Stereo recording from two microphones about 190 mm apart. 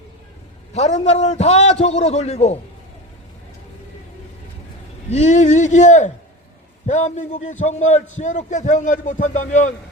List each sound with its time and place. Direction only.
0.7 s a man's voice: 35° left (ahead or behind)
5.1 s a man's voice: 35° left (ahead or behind)